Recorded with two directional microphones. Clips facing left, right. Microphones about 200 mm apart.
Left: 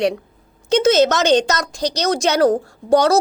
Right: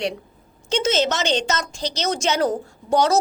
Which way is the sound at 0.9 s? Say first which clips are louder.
Left 7 dB; 40° left (ahead or behind).